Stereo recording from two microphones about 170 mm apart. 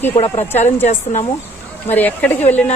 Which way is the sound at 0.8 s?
45° left (ahead or behind).